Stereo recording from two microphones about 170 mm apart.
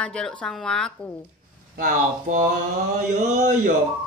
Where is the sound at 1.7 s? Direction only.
50° right (ahead or behind).